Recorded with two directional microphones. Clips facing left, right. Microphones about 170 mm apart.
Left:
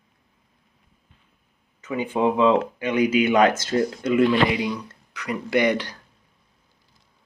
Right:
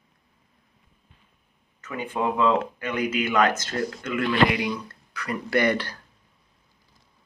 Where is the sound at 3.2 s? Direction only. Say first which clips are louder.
Left 4 dB; 30° left (ahead or behind).